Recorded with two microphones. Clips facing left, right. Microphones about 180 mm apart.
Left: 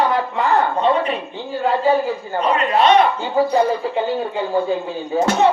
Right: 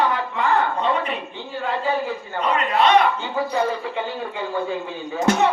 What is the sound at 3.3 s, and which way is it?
A man's voice, 35° left (ahead or behind).